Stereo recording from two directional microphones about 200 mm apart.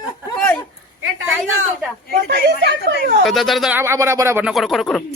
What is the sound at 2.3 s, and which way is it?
Speech, 55° right (ahead or behind).